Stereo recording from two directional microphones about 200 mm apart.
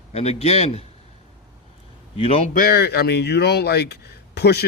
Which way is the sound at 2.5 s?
50° left (ahead or behind).